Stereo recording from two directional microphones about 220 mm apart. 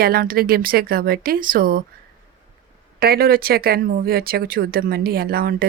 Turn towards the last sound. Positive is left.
turn(degrees=-45)  # may be behind; listen again after turning